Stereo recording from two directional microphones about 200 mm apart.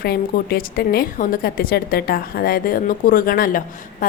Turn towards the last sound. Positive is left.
turn(degrees=45)  # may be behind; listen again after turning